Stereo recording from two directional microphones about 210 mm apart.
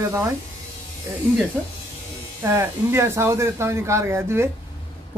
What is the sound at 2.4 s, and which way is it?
A man's voice, 15° right (ahead or behind).